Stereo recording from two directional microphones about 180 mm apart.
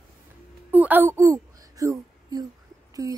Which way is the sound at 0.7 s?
10° right (ahead or behind).